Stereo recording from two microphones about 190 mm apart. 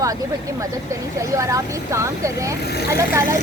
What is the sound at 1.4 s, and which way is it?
Speech, 15° right (ahead or behind).